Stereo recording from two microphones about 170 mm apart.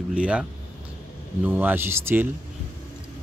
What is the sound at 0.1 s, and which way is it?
Speech, 5° right (ahead or behind).